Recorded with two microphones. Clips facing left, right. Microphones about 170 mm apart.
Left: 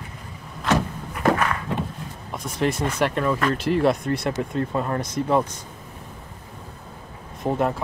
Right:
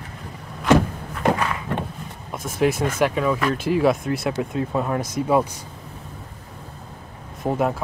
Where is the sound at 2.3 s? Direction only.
5° right (ahead or behind).